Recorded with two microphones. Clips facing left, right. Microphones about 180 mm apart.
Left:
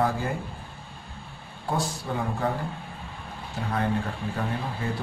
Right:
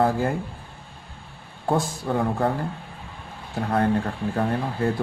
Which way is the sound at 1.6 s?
50° right (ahead or behind).